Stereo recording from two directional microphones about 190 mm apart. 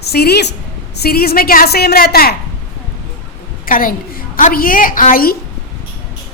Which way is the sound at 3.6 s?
45° left (ahead or behind).